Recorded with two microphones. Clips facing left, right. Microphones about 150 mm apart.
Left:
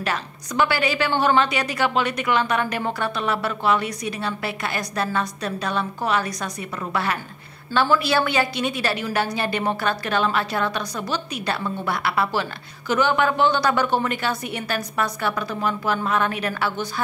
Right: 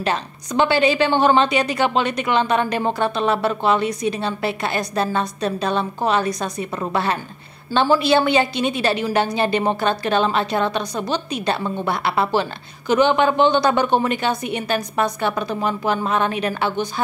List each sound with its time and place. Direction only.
0.0 s a woman's voice: 25° right (ahead or behind)